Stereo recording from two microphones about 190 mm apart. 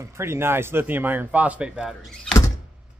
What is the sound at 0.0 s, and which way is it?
Speech, 15° right (ahead or behind).